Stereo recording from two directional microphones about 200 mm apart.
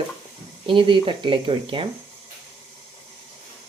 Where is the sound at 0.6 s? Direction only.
25° right (ahead or behind).